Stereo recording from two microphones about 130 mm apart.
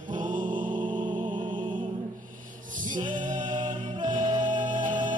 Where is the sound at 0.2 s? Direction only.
85° right.